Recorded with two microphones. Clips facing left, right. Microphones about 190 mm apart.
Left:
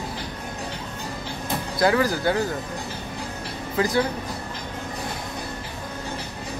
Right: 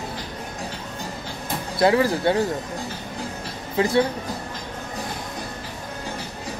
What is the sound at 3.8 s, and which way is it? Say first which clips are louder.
Speech: right 3 dB; 25° right (ahead or behind).